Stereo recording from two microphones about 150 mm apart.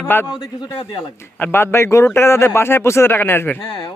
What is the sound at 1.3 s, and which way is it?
A man's voice, 15° left (ahead or behind).